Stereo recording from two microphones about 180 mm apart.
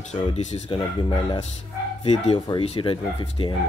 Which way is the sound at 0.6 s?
25° left (ahead or behind).